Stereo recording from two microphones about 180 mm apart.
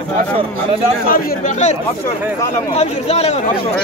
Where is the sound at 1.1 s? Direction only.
50° left (ahead or behind).